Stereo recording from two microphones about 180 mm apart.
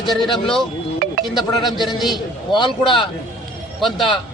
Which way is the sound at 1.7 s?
Centre (ahead or behind).